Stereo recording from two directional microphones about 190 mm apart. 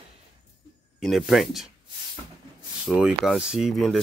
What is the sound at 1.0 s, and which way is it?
Speech, centre (ahead or behind).